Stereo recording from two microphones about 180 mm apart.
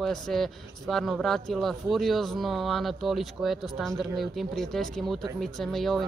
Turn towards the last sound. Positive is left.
turn(degrees=0)  # may be behind; listen again after turning